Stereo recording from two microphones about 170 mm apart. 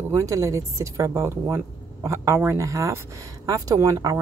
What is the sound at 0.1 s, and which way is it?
Speech, 20° right (ahead or behind).